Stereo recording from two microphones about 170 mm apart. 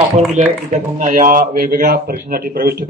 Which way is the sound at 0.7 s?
50° right (ahead or behind).